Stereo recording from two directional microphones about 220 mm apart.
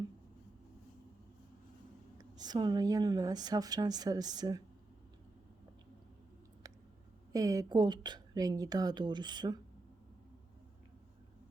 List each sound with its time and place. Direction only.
2.1 s speech: 20° right (ahead or behind)
6.6 s a sound: 15° right (ahead or behind)
7.3 s a woman's voice: 15° right (ahead or behind)